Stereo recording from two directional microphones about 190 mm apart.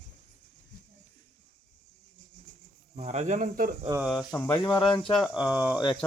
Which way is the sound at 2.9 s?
35° right (ahead or behind).